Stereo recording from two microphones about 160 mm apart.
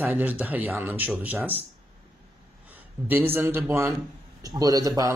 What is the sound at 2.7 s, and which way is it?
A man's voice, 10° right (ahead or behind).